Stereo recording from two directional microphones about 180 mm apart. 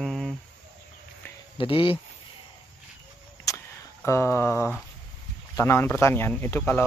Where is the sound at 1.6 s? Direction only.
30° left (ahead or behind).